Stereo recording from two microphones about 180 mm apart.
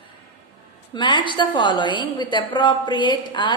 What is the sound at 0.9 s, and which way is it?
A woman's voice, 25° left (ahead or behind).